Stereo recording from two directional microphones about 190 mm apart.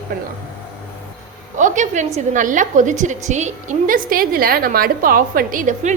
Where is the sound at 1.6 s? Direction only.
40° right (ahead or behind).